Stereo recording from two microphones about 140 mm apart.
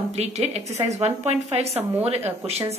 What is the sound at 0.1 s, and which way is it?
A woman's voice, 50° right (ahead or behind).